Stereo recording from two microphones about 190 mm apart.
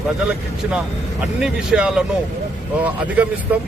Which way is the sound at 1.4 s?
5° right (ahead or behind).